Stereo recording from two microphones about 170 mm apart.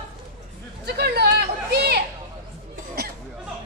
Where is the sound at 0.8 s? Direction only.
70° right (ahead or behind).